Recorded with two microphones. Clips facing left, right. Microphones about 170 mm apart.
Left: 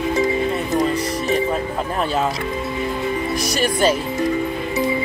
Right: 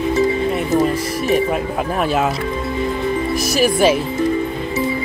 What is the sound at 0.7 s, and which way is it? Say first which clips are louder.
Music: right 3 dB; 5° right (ahead or behind).